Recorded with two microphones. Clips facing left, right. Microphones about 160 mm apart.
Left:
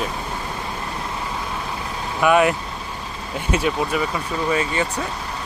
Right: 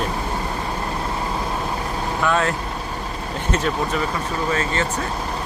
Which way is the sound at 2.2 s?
15° left (ahead or behind).